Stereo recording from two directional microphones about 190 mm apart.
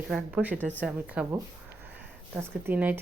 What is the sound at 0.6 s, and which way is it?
Speech, 10° left (ahead or behind).